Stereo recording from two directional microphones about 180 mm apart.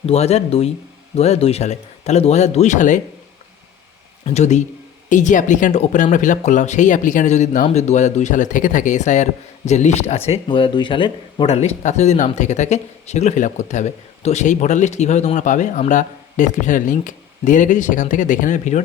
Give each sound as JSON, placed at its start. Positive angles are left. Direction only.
{"t": 0.0, "sound": "speech", "side_deg": 35}
{"t": 4.4, "sound": "speech", "side_deg": 40}